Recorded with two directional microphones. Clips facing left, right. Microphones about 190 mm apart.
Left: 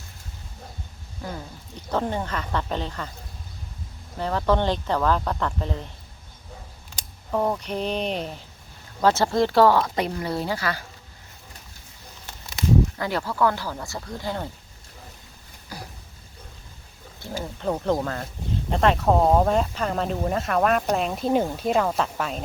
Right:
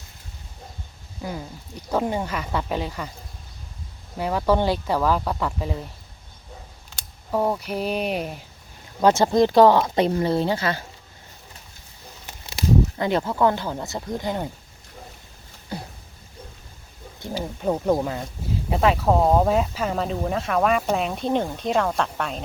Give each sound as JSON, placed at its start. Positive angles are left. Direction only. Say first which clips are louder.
{"t": 1.2, "sound": "speech", "louder": "right 3 dB", "side_deg": -10}
{"t": 4.2, "sound": "speech", "louder": "right 2 dB", "side_deg": -10}
{"t": 7.3, "sound": "speech", "louder": "right 1 dB", "side_deg": -10}
{"t": 13.0, "sound": "speech", "louder": "right 3 dB", "side_deg": -20}
{"t": 15.7, "sound": "a sound", "louder": "right 5 dB", "side_deg": -25}
{"t": 17.8, "sound": "speech", "louder": "right 2 dB", "side_deg": -10}